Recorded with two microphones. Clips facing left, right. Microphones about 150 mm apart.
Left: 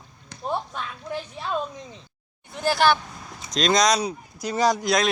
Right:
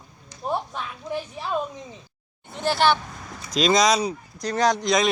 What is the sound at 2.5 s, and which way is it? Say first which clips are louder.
Speech: even; 5° left (ahead or behind).